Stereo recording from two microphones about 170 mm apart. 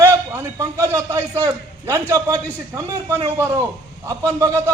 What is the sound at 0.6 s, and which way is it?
A man's voice, 15° right (ahead or behind).